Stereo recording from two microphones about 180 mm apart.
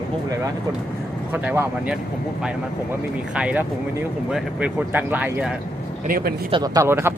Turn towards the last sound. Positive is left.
turn(degrees=-15)  # may be behind; listen again after turning